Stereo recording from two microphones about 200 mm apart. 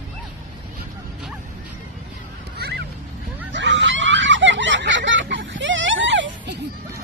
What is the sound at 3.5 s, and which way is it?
Snicker, 65° right (ahead or behind).